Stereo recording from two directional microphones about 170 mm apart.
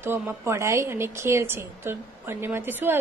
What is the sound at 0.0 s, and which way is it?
A woman's voice, 15° right (ahead or behind).